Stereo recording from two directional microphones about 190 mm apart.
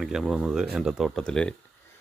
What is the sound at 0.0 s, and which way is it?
Speech, 5° right (ahead or behind).